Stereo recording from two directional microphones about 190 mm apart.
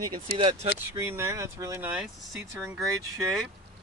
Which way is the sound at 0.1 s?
25° right (ahead or behind).